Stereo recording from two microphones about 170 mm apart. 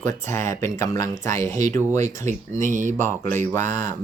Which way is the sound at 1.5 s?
45° right (ahead or behind).